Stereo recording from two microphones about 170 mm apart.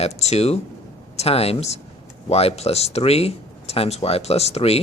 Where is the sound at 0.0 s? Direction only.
40° left (ahead or behind).